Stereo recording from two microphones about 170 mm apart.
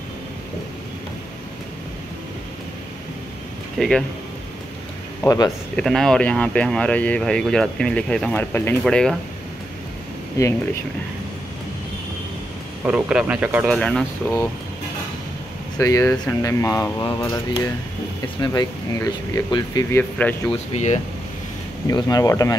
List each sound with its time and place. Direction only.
3.7 s speech: centre (ahead or behind)
5.2 s speech: 20° left (ahead or behind)
5.8 s speech: 5° left (ahead or behind)
10.4 s speech: 15° left (ahead or behind)
12.8 s speech: 5° right (ahead or behind)
13.7 s speech: 5° left (ahead or behind)
15.8 s speech: 15° left (ahead or behind)
20.7 s speech: 40° left (ahead or behind)
21.8 s speech: 20° left (ahead or behind)